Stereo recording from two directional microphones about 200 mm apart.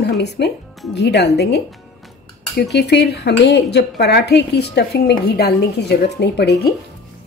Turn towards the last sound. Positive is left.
turn(degrees=55)  # may be behind; listen again after turning